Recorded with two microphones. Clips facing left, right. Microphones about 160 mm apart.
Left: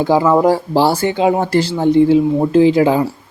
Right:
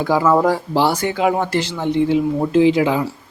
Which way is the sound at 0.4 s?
35° left (ahead or behind).